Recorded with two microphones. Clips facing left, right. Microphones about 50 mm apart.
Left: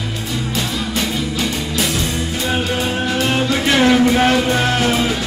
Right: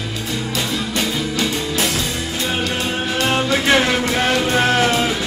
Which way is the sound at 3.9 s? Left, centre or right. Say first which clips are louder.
Left 5 dB; centre.